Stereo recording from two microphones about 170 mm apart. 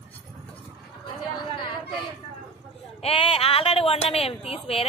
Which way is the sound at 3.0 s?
35° left (ahead or behind).